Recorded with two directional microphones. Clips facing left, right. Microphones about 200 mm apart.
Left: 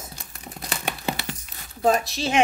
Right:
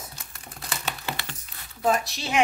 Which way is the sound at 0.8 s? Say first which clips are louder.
Left 6 dB; 10° left (ahead or behind).